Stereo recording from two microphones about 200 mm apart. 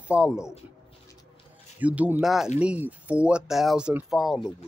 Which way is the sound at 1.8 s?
5° right (ahead or behind).